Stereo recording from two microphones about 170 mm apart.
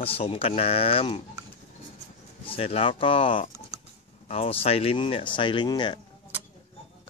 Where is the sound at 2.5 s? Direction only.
35° left (ahead or behind).